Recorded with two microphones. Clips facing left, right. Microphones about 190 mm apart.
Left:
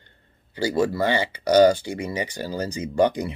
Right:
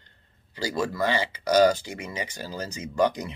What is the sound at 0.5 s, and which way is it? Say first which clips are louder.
Speech: left 6 dB; 30° left (ahead or behind).